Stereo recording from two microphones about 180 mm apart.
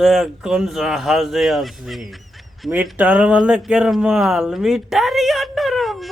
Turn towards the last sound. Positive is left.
turn(degrees=0)  # may be behind; listen again after turning